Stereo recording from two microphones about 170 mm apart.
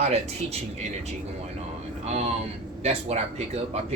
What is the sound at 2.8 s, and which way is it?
Speech, 40° right (ahead or behind).